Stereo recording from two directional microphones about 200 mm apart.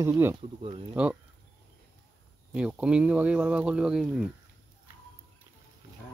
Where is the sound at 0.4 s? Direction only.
30° right (ahead or behind).